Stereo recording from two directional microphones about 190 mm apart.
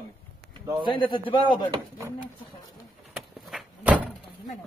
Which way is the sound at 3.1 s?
5° right (ahead or behind).